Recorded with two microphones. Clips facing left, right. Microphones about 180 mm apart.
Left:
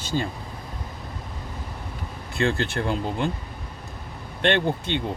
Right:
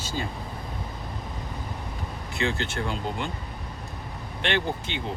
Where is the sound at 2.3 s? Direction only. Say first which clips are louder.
Left 4 dB; 55° left (ahead or behind).